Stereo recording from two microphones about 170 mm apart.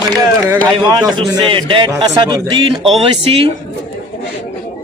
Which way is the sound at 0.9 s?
20° right (ahead or behind).